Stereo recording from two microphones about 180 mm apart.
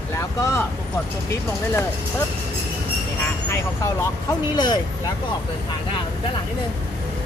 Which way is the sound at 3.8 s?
20° left (ahead or behind).